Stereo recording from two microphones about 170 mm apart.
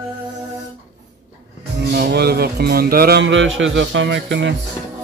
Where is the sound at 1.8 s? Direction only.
75° right (ahead or behind).